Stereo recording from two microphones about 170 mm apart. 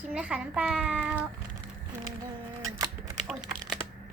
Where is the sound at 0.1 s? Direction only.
5° right (ahead or behind).